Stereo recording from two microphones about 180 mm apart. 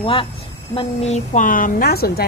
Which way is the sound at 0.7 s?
40° left (ahead or behind).